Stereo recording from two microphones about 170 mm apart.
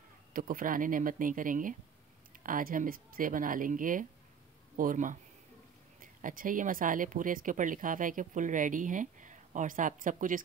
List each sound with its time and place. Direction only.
0.3 s speech: 55° right (ahead or behind)